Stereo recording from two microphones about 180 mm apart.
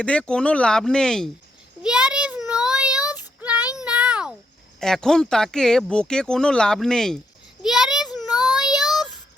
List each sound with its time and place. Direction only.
0.0 s speech: 5° left (ahead or behind)
1.8 s child singing: 5° right (ahead or behind)
4.8 s speech: 5° left (ahead or behind)
7.6 s child singing: centre (ahead or behind)
8.5 s child singing: 20° left (ahead or behind)